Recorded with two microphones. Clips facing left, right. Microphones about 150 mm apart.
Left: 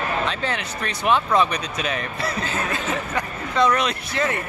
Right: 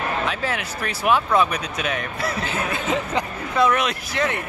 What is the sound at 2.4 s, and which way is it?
Speech, 10° right (ahead or behind).